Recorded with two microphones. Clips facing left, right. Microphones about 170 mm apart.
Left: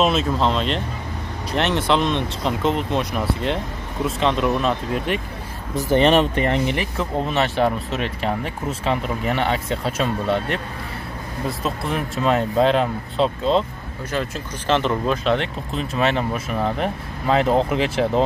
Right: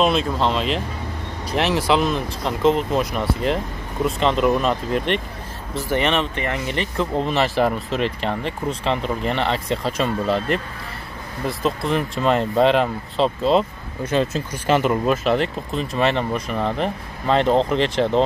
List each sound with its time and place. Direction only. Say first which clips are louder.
0.0 s speech: even; centre (ahead or behind)
5.9 s speech: left 6 dB; 35° left (ahead or behind)
6.7 s speech: right 1 dB; 5° left (ahead or behind)
14.1 s speech: right 5 dB; 20° right (ahead or behind)
14.7 s speech: right 2 dB; 10° right (ahead or behind)